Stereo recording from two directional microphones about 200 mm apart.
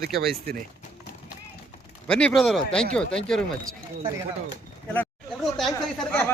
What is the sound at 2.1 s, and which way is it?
A man's voice, 5° left (ahead or behind).